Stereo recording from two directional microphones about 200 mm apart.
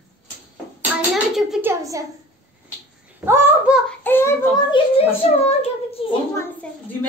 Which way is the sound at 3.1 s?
10° right (ahead or behind).